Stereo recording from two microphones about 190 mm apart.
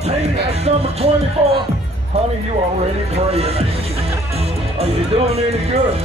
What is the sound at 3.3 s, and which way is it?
Speech, 30° right (ahead or behind).